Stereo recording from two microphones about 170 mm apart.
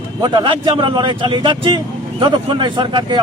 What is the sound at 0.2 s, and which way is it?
Speech, 25° right (ahead or behind).